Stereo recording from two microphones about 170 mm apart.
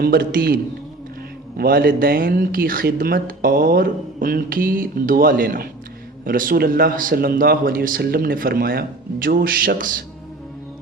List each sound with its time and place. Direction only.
0.0 s speech: 60° right (ahead or behind)